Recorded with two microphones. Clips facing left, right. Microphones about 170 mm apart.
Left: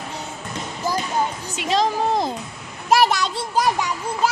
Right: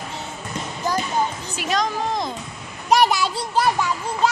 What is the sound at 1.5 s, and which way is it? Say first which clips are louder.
Speech: left 3 dB; 25° left (ahead or behind).